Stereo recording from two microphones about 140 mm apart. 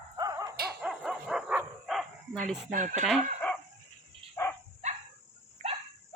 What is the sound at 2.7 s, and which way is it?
Speech, 60° right (ahead or behind).